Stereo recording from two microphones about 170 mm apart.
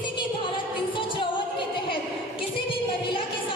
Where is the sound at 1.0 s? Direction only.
30° left (ahead or behind).